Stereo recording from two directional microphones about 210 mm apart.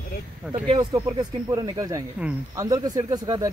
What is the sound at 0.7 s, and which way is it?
Speech, 20° right (ahead or behind).